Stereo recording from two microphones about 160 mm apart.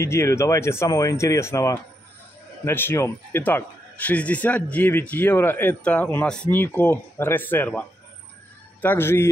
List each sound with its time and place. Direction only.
0.0 s speech: 15° left (ahead or behind)
8.8 s speech: 15° left (ahead or behind)